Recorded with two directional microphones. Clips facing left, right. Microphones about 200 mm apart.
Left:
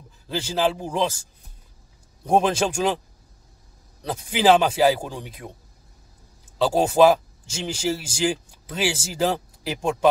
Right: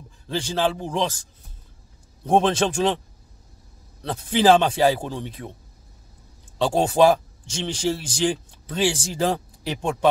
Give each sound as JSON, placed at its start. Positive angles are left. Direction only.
{"t": 0.3, "sound": "speech", "side_deg": 5}
{"t": 2.2, "sound": "speech", "side_deg": 10}
{"t": 4.0, "sound": "speech", "side_deg": 5}
{"t": 6.6, "sound": "speech", "side_deg": 5}